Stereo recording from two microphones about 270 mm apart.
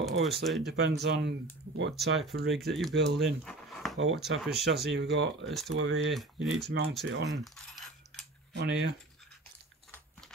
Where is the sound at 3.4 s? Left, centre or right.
Centre.